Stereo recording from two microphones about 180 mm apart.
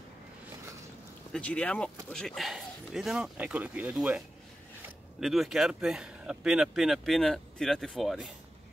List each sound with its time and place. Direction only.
1.3 s speech: 5° left (ahead or behind)
5.2 s speech: centre (ahead or behind)